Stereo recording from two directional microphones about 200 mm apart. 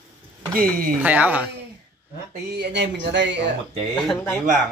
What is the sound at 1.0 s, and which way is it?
Speech, 10° right (ahead or behind).